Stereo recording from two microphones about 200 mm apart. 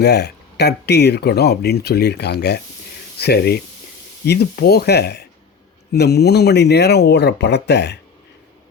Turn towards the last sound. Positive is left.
turn(degrees=60)  # may be behind; listen again after turning